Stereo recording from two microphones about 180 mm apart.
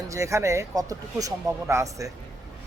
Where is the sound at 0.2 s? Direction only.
15° right (ahead or behind).